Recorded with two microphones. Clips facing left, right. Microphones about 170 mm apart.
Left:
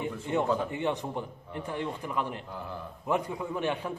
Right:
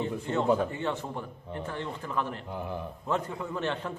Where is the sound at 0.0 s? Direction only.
15° left (ahead or behind).